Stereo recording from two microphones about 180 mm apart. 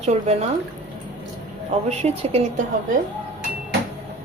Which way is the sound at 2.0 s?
35° right (ahead or behind).